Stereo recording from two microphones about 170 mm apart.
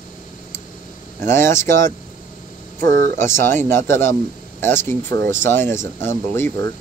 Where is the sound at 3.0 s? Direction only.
15° left (ahead or behind).